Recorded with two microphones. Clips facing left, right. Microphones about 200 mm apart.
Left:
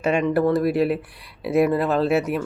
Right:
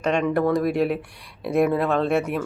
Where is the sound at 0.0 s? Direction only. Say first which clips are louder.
Left 2 dB; 5° left (ahead or behind).